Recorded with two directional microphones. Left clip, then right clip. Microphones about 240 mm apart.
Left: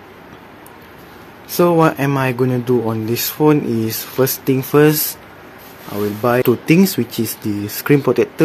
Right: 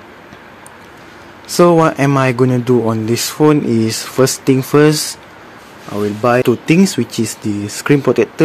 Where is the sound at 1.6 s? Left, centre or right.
Right.